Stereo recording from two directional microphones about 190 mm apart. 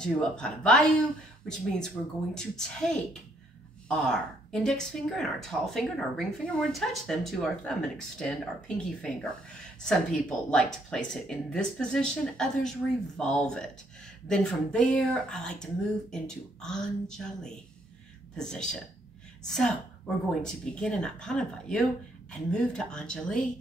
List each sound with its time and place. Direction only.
0.0 s a woman's voice: 5° left (ahead or behind)